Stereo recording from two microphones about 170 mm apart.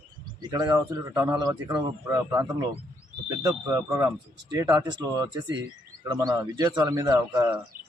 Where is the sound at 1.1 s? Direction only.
10° right (ahead or behind).